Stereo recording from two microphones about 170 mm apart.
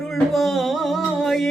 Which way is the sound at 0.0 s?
Centre (ahead or behind).